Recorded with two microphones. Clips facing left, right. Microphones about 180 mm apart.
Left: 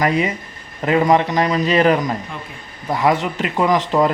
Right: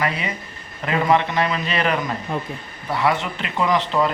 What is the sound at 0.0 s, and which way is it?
A man's voice, 45° left (ahead or behind).